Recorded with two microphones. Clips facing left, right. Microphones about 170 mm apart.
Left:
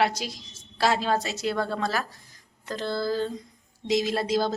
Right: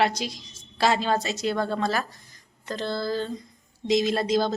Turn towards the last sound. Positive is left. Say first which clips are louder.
# right 2 dB
turn(degrees=10)  # may be behind; listen again after turning